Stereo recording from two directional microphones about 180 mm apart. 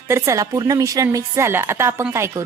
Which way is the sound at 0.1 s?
15° right (ahead or behind).